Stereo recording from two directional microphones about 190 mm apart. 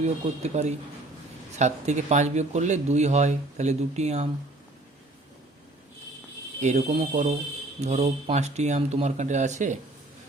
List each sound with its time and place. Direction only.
0.0 s speech: 35° right (ahead or behind)
6.6 s speech: 35° right (ahead or behind)